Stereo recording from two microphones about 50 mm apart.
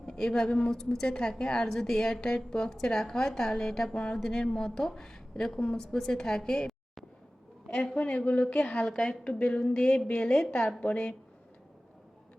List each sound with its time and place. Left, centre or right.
0.0 s a woman's voice: centre
1.0 s a woman's voice: centre
7.7 s a woman's voice: centre